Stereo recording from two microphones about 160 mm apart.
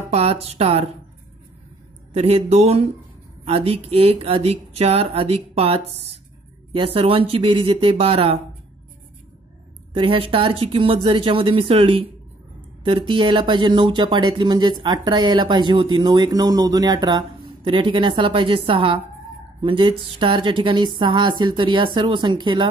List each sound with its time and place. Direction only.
0.1 s speech: 40° right (ahead or behind)
2.1 s speech: 40° right (ahead or behind)
9.9 s speech: 35° right (ahead or behind)